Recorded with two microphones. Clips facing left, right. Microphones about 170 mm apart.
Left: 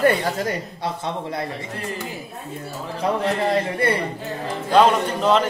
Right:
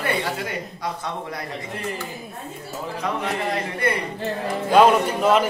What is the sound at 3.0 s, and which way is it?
Speech, 30° left (ahead or behind).